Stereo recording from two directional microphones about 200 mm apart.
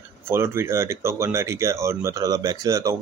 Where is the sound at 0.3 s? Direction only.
15° right (ahead or behind).